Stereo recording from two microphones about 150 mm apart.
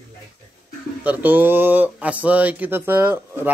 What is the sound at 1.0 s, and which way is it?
Speech, 10° right (ahead or behind).